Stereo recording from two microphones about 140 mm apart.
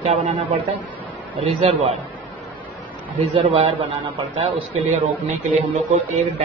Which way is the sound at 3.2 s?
40° right (ahead or behind).